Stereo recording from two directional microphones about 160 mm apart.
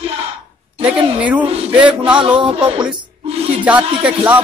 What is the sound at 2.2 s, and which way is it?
Speech, 5° right (ahead or behind).